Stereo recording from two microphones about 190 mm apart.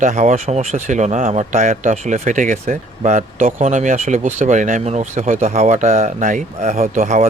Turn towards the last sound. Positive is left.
turn(degrees=-40)  # may be behind; listen again after turning